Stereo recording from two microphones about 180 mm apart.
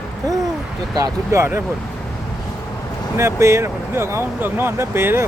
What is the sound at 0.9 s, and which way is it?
Speech, 20° right (ahead or behind).